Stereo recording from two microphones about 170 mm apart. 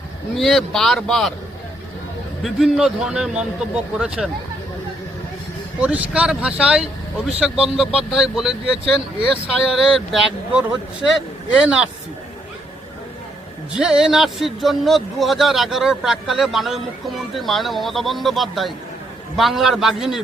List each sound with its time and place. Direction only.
0.3 s speech: centre (ahead or behind)
2.4 s speech: centre (ahead or behind)
5.8 s speech: 10° right (ahead or behind)
8.8 s speech: 30° right (ahead or behind)
9.7 s speech: centre (ahead or behind)
13.7 s speech: 5° right (ahead or behind)